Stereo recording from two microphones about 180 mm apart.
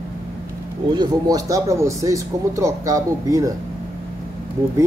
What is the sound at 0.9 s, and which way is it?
Speech, 20° right (ahead or behind).